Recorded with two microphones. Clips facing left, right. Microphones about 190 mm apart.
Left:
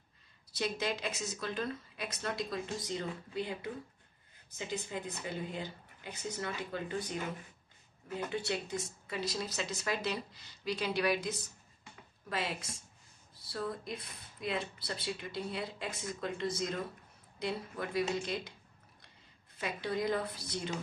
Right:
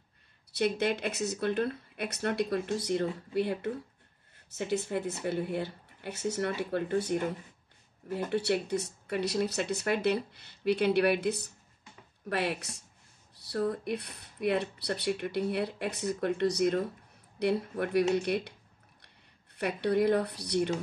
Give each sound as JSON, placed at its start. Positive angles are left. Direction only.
{"t": 0.5, "sound": "speech", "side_deg": -60}
{"t": 19.5, "sound": "speech", "side_deg": -65}